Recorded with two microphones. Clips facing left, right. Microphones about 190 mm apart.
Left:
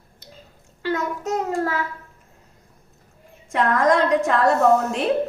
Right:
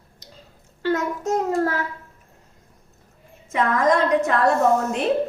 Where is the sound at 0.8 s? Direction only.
40° right (ahead or behind).